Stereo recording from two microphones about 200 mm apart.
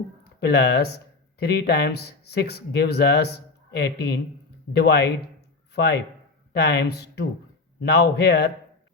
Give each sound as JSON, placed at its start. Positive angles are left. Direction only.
{"t": 0.3, "sound": "a man's voice", "side_deg": 55}